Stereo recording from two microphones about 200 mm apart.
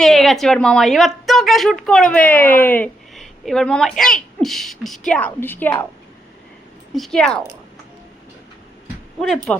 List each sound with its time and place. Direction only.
0.0 s a woman's voice: centre (ahead or behind)
6.9 s a woman's voice: centre (ahead or behind)
9.2 s a woman's voice: centre (ahead or behind)